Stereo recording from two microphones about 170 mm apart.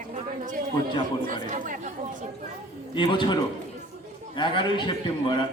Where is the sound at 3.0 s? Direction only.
25° left (ahead or behind).